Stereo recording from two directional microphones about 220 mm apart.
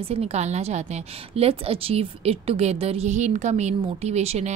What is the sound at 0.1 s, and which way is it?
A woman's voice, 30° right (ahead or behind).